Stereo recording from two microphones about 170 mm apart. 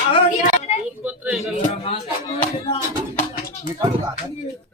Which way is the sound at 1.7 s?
35° left (ahead or behind).